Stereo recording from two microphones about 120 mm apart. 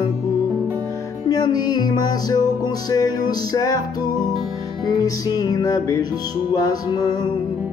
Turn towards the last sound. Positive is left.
turn(degrees=35)  # may be behind; listen again after turning